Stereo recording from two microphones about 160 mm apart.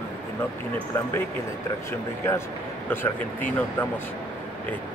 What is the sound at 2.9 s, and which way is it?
Speech, 15° left (ahead or behind).